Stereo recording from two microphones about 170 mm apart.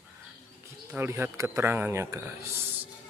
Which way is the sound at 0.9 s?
15° right (ahead or behind).